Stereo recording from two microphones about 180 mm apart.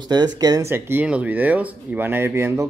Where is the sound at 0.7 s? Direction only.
10° right (ahead or behind).